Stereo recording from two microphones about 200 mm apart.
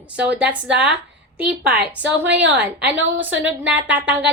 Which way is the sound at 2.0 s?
60° right (ahead or behind).